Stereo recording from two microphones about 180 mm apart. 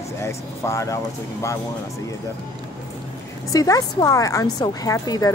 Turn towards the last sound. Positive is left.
turn(degrees=20)  # may be behind; listen again after turning